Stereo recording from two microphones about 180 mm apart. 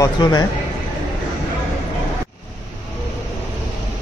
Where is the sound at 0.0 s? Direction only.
20° left (ahead or behind).